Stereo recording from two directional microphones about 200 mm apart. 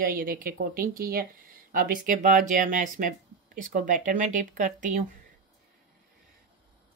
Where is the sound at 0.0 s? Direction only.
45° right (ahead or behind).